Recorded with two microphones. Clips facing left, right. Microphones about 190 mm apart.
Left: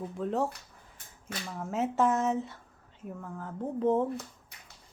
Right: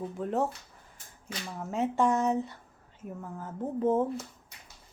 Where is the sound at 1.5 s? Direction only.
Centre (ahead or behind).